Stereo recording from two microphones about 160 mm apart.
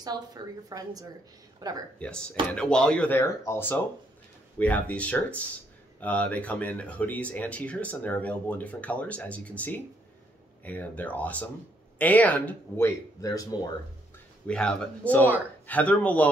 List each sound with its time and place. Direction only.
0.0 s a woman's voice: 25° right (ahead or behind)
2.0 s speech: 5° left (ahead or behind); by 13.6 s 20° left (ahead or behind)
14.5 s speech: 5° left (ahead or behind)